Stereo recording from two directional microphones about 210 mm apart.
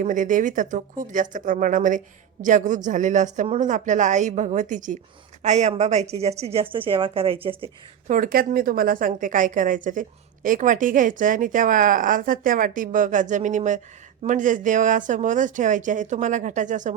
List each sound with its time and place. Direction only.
0.0 s a woman's voice: 40° right (ahead or behind)
8.1 s a woman's voice: 40° right (ahead or behind)